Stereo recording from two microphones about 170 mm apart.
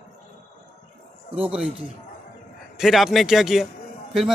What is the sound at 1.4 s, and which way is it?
A man's voice, 5° right (ahead or behind).